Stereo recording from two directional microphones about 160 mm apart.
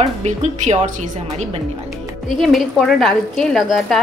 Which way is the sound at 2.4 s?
Centre (ahead or behind).